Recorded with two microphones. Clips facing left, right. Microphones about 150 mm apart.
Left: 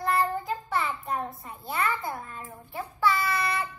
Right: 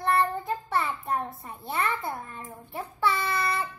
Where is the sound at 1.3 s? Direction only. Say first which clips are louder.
Even; centre (ahead or behind).